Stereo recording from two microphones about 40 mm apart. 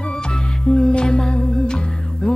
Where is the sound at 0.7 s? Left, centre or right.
Left.